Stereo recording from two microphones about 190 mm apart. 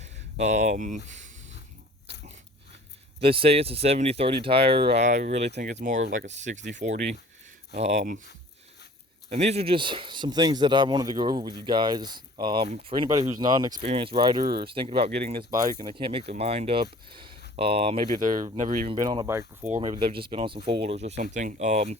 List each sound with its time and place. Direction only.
0.0 s a sound: 35° right (ahead or behind)
3.2 s speech: 30° right (ahead or behind)
9.3 s speech: 35° right (ahead or behind)
18.2 s speech: 45° right (ahead or behind)
18.9 s speech: 25° right (ahead or behind)
19.8 s speech: 25° right (ahead or behind)